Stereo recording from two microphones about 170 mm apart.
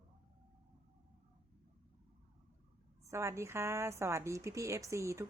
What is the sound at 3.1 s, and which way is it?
A woman's voice, 15° right (ahead or behind).